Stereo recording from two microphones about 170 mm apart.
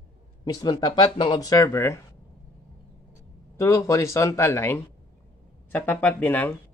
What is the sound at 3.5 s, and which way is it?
Speech, 20° left (ahead or behind).